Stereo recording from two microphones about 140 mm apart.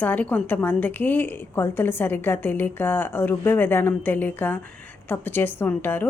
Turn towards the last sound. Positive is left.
turn(degrees=15)  # may be behind; listen again after turning